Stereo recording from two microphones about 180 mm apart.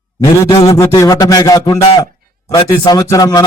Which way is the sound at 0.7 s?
20° left (ahead or behind).